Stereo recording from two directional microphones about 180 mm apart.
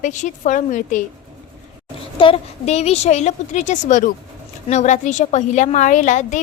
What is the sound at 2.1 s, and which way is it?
A woman's voice, 30° left (ahead or behind).